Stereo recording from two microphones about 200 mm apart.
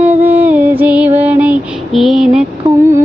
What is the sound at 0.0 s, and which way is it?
Music, 10° right (ahead or behind).